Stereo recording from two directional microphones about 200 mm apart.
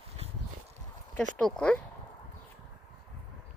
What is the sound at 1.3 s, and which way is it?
Speech, 5° left (ahead or behind).